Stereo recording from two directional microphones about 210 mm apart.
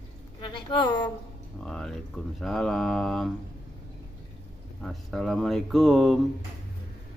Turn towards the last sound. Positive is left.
turn(degrees=0)  # may be behind; listen again after turning